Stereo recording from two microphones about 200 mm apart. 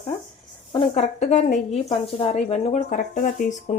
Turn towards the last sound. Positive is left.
turn(degrees=40)  # may be behind; listen again after turning